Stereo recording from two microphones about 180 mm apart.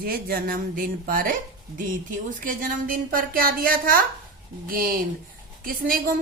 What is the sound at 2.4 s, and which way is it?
A woman's voice, 50° right (ahead or behind).